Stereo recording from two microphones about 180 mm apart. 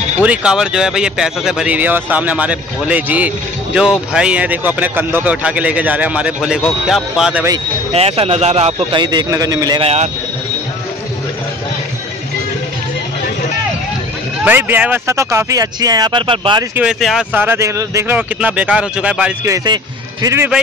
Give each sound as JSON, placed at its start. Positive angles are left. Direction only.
{"t": 0.2, "sound": "speech", "side_deg": -5}
{"t": 7.9, "sound": "speech", "side_deg": -35}
{"t": 14.4, "sound": "speech", "side_deg": -10}
{"t": 16.7, "sound": "speech", "side_deg": -5}
{"t": 19.4, "sound": "speech", "side_deg": -20}